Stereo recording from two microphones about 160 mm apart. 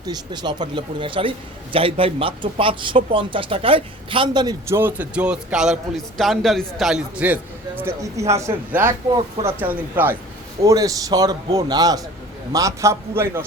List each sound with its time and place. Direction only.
0.0 s a man's voice: 25° right (ahead or behind)
4.7 s a man's voice: 15° right (ahead or behind)
7.8 s a man's voice: 15° right (ahead or behind)